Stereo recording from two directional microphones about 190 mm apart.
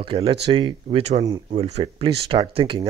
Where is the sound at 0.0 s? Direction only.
30° right (ahead or behind).